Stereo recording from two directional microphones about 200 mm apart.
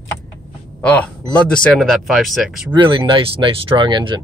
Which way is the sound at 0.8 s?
5° left (ahead or behind).